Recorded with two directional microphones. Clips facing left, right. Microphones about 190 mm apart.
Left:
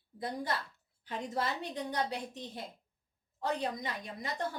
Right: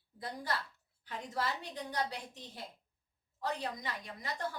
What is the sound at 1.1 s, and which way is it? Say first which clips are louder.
A woman's voice: left 3 dB; 20° left (ahead or behind).